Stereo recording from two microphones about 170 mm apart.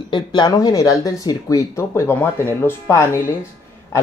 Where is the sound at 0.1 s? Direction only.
25° left (ahead or behind).